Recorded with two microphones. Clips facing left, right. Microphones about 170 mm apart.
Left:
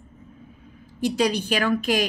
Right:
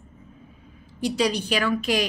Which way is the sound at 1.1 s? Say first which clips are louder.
Even; 50° left (ahead or behind).